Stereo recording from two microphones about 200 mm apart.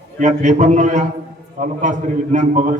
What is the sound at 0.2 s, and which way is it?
A man's voice, 35° right (ahead or behind).